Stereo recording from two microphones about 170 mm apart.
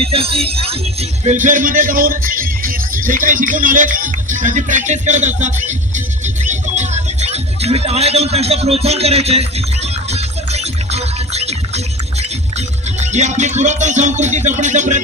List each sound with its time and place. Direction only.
0.0 s music: 35° right (ahead or behind)
1.3 s speech: 50° right (ahead or behind)
6.2 s music: 45° right (ahead or behind)